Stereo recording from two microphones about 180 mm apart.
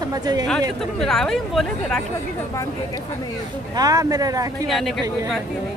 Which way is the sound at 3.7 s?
20° right (ahead or behind).